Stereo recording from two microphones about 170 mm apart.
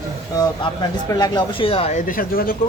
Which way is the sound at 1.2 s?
30° left (ahead or behind).